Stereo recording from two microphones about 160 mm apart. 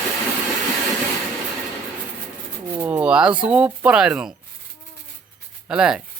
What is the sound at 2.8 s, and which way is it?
Speech, 10° right (ahead or behind).